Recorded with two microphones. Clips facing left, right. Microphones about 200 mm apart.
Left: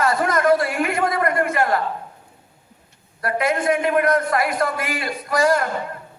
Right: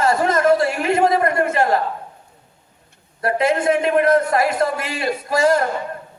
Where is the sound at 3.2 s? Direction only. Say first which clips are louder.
Right 3 dB; 25° right (ahead or behind).